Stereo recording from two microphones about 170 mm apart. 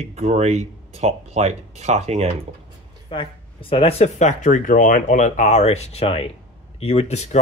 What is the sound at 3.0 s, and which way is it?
Speech, 30° left (ahead or behind).